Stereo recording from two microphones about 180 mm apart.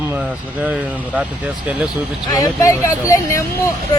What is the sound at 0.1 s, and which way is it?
Speech, 10° right (ahead or behind).